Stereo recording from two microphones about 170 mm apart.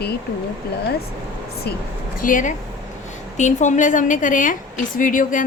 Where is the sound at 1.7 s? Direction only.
70° left (ahead or behind).